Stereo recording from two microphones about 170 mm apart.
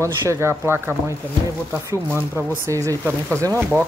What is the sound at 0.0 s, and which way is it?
Stir, 15° right (ahead or behind).